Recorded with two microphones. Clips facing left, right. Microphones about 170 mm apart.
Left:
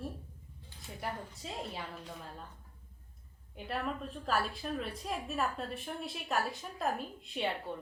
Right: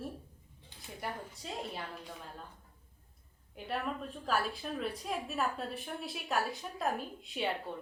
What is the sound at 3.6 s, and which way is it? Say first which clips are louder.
A woman's voice: even; centre (ahead or behind).